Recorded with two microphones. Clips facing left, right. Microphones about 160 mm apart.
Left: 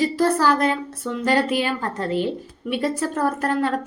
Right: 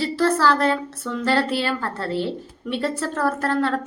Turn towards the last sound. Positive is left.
turn(degrees=15)  # may be behind; listen again after turning